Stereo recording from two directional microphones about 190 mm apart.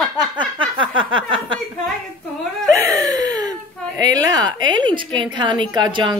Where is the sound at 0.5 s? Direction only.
25° right (ahead or behind).